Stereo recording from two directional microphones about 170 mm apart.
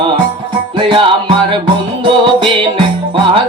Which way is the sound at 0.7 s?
30° right (ahead or behind).